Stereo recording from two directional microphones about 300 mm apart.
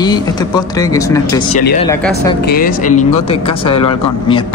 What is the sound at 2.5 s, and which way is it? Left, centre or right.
Speech, left.